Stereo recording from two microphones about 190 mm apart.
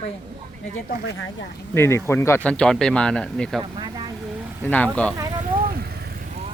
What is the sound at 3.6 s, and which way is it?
Speech, 25° right (ahead or behind).